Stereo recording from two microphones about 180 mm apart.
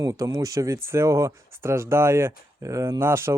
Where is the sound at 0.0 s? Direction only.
20° right (ahead or behind).